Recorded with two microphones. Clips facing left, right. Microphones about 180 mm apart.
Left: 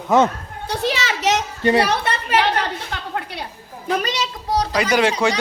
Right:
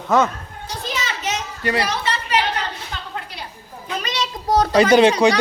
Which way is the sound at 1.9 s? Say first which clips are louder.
Left 2 dB; 55° left (ahead or behind).